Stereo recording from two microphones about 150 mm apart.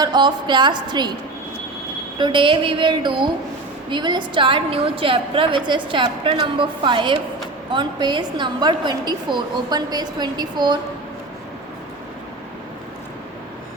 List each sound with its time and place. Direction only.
0.0 s a woman's voice: 30° right (ahead or behind)
2.1 s a woman's voice: 30° right (ahead or behind)